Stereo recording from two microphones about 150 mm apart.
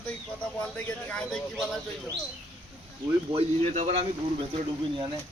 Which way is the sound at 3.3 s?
45° right (ahead or behind).